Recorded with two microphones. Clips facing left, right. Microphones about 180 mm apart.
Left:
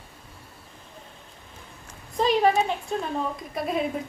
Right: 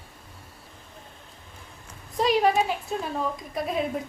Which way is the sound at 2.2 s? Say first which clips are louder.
Left 1 dB; 5° right (ahead or behind).